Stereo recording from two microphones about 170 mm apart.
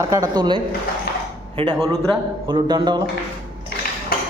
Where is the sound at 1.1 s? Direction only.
65° left (ahead or behind).